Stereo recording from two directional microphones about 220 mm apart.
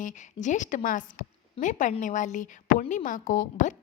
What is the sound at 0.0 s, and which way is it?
A woman's voice, 35° left (ahead or behind).